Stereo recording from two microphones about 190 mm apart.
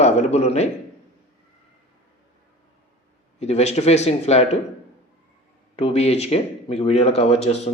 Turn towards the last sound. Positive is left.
turn(degrees=35)  # may be behind; listen again after turning